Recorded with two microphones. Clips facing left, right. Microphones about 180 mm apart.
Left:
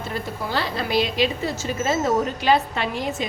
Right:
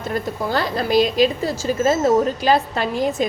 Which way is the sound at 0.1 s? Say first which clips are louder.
Right 6 dB; 45° right (ahead or behind).